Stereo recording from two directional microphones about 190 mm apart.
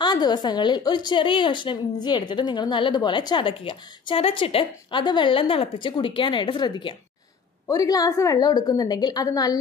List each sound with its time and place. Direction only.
0.0 s a woman's voice: 25° left (ahead or behind)